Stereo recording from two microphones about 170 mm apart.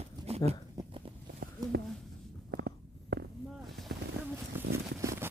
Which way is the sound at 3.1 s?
75° right (ahead or behind).